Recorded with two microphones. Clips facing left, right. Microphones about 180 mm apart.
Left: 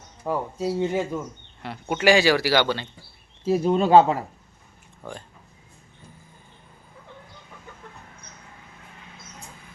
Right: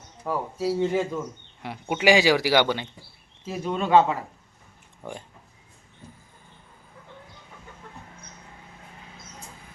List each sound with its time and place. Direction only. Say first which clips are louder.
0.2 s speech: left 1 dB; 15° left (ahead or behind)
1.6 s speech: left 1 dB; 10° right (ahead or behind)
3.4 s speech: left 8 dB; 35° left (ahead or behind)